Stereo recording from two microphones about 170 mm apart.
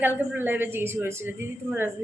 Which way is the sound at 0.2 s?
10° right (ahead or behind).